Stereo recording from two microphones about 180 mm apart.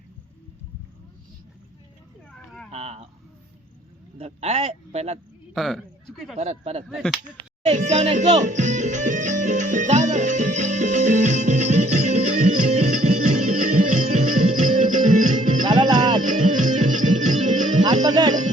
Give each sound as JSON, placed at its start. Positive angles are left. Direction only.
{"t": 2.7, "sound": "speech", "side_deg": -35}
{"t": 4.2, "sound": "speech", "side_deg": -35}
{"t": 5.5, "sound": "a sound", "side_deg": 0}
{"t": 6.3, "sound": "speech", "side_deg": -35}
{"t": 6.8, "sound": "speech", "side_deg": 0}
{"t": 7.7, "sound": "music", "side_deg": -40}
{"t": 15.6, "sound": "music", "side_deg": -25}
{"t": 16.2, "sound": "music", "side_deg": -45}
{"t": 18.0, "sound": "music", "side_deg": -20}